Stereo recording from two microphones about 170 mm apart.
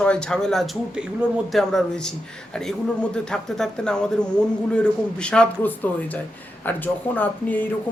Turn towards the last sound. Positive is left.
turn(degrees=10)  # may be behind; listen again after turning